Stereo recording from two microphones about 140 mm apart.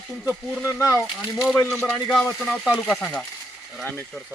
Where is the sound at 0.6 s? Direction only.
20° left (ahead or behind).